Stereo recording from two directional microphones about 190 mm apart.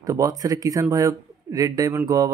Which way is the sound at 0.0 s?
15° right (ahead or behind).